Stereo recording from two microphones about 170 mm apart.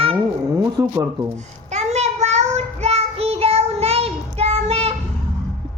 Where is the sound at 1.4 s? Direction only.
40° right (ahead or behind).